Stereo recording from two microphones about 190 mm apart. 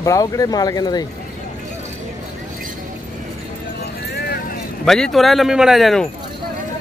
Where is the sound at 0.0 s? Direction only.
15° left (ahead or behind).